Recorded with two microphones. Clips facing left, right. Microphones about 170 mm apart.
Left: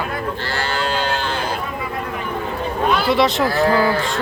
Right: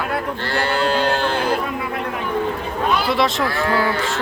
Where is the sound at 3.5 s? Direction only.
35° left (ahead or behind).